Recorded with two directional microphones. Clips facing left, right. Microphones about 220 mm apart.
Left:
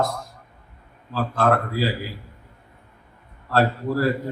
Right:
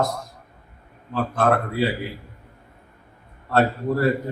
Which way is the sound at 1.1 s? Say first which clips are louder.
Even; 20° right (ahead or behind).